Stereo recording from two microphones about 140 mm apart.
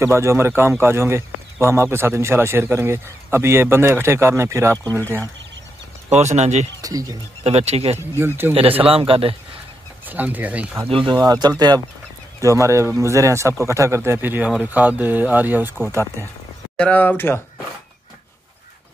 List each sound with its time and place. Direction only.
0.0 s speech: 20° right (ahead or behind)
6.1 s speech: 55° right (ahead or behind)
6.8 s speech: 25° right (ahead or behind)
7.4 s speech: 50° right (ahead or behind)
8.2 s speech: 15° right (ahead or behind)
8.8 s speech: 40° right (ahead or behind)
10.0 s speech: 10° right (ahead or behind)
10.9 s speech: 35° right (ahead or behind); by 16.3 s 20° right (ahead or behind)
16.7 s speech: 10° left (ahead or behind)